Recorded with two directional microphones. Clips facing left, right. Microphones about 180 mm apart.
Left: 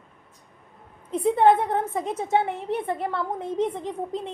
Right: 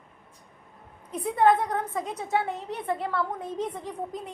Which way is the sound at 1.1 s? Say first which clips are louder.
Left 3 dB; 25° left (ahead or behind).